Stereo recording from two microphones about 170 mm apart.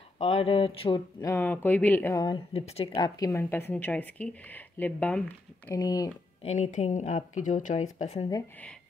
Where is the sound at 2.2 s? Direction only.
30° left (ahead or behind).